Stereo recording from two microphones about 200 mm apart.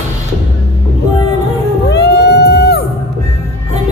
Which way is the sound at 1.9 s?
55° left (ahead or behind).